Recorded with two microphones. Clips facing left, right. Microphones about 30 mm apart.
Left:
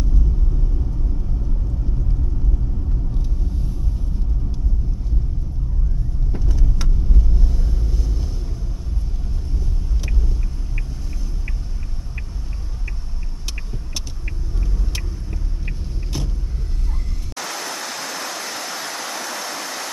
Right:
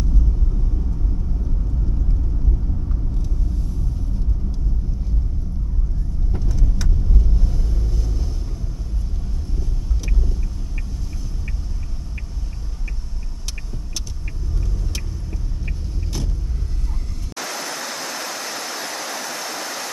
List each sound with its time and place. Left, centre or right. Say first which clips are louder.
6.3 s vehicle: right 1 dB; centre
15.6 s vehicle: right 1 dB; centre
17.4 s stream: even; centre